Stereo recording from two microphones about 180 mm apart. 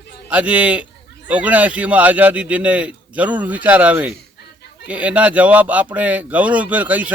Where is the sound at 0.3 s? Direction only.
10° right (ahead or behind).